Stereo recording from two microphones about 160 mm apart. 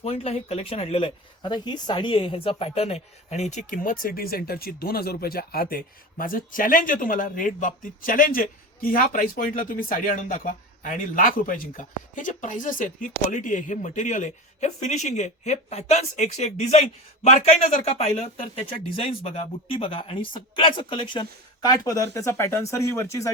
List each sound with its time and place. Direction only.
0.0 s speech: 40° left (ahead or behind)
1.4 s a man's voice: 25° left (ahead or behind)
18.3 s speech: 60° left (ahead or behind)
19.2 s speech: 35° left (ahead or behind); by 23.3 s 20° left (ahead or behind)